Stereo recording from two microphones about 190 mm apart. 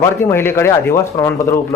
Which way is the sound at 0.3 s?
10° left (ahead or behind).